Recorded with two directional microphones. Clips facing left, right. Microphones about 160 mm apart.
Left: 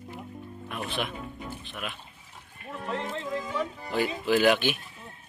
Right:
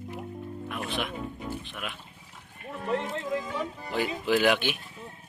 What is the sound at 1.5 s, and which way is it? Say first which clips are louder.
Music: right 2 dB; 10° right (ahead or behind).